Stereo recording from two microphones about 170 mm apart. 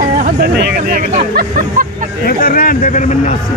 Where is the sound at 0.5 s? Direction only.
60° right (ahead or behind).